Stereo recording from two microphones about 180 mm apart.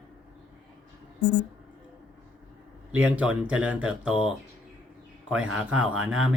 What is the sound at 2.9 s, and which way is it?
Speech, 5° right (ahead or behind).